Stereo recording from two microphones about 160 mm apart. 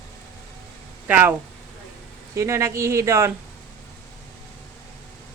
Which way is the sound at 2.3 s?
20° right (ahead or behind).